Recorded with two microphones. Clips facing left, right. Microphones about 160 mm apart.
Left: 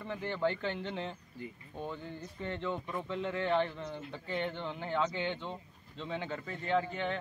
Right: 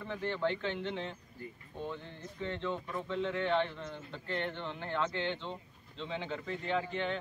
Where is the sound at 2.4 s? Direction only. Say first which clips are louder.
Even; 10° left (ahead or behind).